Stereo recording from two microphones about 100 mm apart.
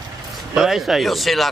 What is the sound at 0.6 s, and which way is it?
Speech, centre (ahead or behind).